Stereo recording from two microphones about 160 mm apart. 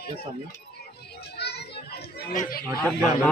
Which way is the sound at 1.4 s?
90° left.